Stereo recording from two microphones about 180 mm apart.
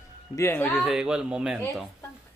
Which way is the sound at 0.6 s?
Centre (ahead or behind).